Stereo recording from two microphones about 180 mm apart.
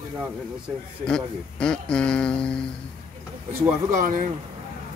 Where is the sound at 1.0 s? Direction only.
5° left (ahead or behind).